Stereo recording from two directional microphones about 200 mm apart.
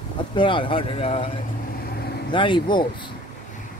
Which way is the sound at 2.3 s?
25° left (ahead or behind).